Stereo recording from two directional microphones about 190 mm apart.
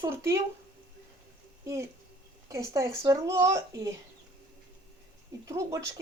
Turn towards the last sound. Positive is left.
turn(degrees=-15)  # may be behind; listen again after turning